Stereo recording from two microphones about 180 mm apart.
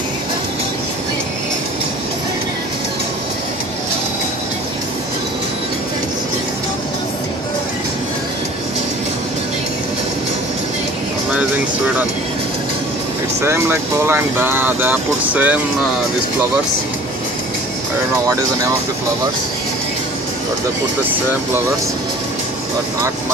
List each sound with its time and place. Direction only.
13.4 s speech: 15° right (ahead or behind)
18.2 s speech: 15° right (ahead or behind)